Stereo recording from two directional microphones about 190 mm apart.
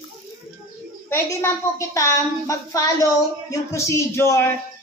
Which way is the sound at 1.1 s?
15° left (ahead or behind).